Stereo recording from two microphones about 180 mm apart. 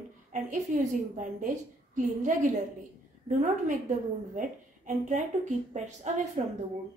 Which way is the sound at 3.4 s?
45° right (ahead or behind).